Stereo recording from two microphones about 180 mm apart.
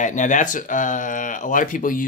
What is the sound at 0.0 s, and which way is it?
Speech, 45° left (ahead or behind).